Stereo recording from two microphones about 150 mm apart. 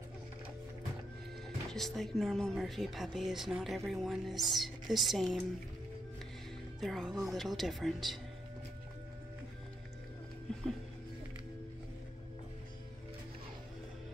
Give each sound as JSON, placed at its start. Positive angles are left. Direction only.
{"t": 1.7, "sound": "speech", "side_deg": 0}
{"t": 6.8, "sound": "speech", "side_deg": 0}